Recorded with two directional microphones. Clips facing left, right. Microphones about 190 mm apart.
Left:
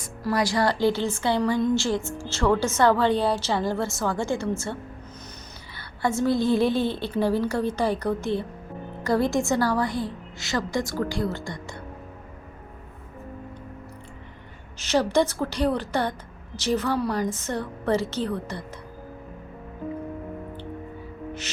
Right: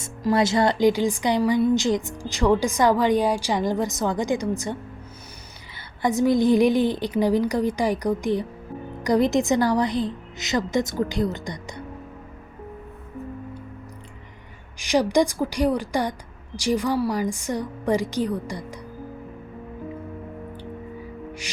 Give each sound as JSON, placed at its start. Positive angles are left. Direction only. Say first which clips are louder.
{"t": 0.0, "sound": "a woman's voice", "louder": "right 4 dB", "side_deg": -20}
{"t": 6.0, "sound": "a woman's voice", "louder": "right 3 dB", "side_deg": -15}
{"t": 14.8, "sound": "a woman's voice", "louder": "right 2 dB", "side_deg": -15}